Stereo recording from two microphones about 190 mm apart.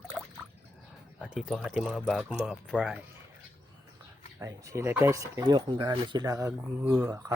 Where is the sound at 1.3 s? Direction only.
Centre (ahead or behind).